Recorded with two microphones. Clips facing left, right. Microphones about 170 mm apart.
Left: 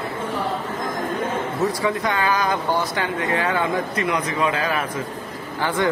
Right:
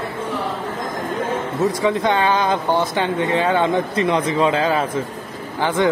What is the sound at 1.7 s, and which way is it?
Speech, 20° right (ahead or behind).